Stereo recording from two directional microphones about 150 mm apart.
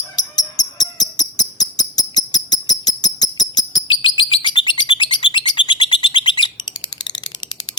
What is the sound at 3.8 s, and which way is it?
Bird, 30° left (ahead or behind).